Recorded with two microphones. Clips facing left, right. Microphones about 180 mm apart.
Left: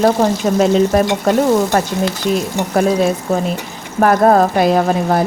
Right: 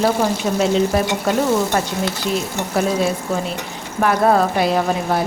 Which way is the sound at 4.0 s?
45° left (ahead or behind).